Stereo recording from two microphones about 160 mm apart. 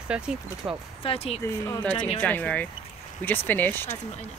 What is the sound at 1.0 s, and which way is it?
Speech, 35° left (ahead or behind).